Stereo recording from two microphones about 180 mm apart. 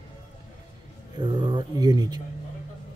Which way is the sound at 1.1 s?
25° right (ahead or behind).